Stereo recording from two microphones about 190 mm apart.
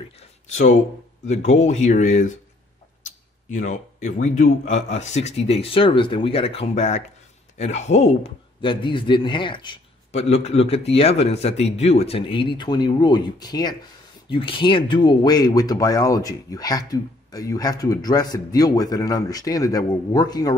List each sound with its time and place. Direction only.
0.2 s a sound: 40° left (ahead or behind)
1.2 s a man's voice: 35° left (ahead or behind)
3.4 s a man's voice: 40° left (ahead or behind); by 20.5 s 20° left (ahead or behind)